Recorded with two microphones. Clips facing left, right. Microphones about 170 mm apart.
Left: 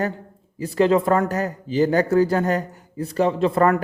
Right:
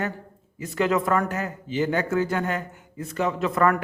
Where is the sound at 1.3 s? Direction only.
35° left (ahead or behind).